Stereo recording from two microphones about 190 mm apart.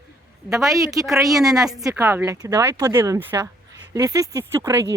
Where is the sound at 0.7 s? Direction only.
15° right (ahead or behind).